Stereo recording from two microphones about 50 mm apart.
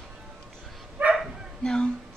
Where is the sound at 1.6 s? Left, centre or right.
Centre.